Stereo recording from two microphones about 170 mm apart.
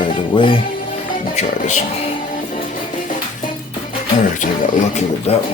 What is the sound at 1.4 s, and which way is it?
Speech, 40° left (ahead or behind).